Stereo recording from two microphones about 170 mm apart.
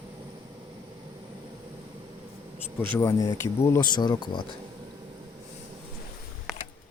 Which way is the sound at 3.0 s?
20° left (ahead or behind).